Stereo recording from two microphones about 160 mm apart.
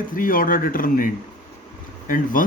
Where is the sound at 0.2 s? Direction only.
60° left (ahead or behind).